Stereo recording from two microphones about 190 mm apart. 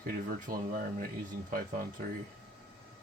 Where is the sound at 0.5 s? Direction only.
50° right (ahead or behind).